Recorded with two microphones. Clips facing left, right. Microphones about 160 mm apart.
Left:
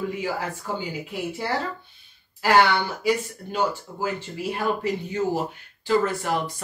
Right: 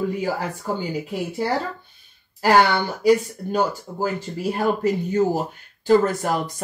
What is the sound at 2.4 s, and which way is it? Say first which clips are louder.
Speech: right 2 dB; 40° right (ahead or behind).